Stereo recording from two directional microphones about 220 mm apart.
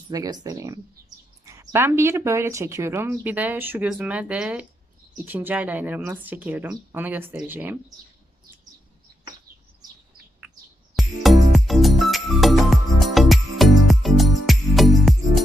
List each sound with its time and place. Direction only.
0.1 s speech: 15° right (ahead or behind)
11.0 s music: centre (ahead or behind)